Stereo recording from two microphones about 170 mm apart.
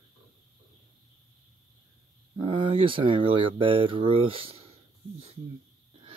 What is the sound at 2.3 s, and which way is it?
Speech, 30° right (ahead or behind).